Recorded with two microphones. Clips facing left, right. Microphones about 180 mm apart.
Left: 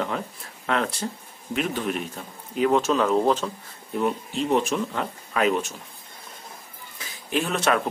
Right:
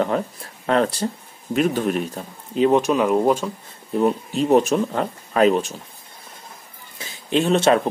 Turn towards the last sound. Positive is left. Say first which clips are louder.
# right 7 dB
turn(degrees=-30)  # may be behind; listen again after turning